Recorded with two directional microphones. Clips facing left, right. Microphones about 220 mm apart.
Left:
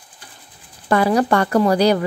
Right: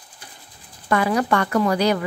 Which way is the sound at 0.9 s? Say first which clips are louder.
Left 4 dB; 35° left (ahead or behind).